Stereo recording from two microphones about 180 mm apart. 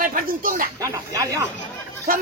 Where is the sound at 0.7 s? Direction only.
20° right (ahead or behind).